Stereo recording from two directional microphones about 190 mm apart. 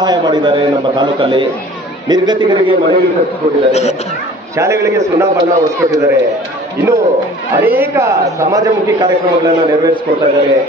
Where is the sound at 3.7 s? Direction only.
35° left (ahead or behind).